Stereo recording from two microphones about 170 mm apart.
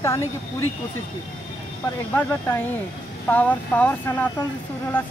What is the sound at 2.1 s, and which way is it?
Speech, 10° left (ahead or behind).